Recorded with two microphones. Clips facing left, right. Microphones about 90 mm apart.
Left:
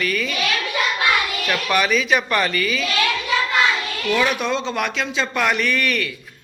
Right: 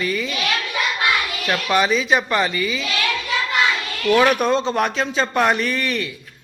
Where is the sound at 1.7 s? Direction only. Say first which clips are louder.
Right 1 dB; 25° right (ahead or behind).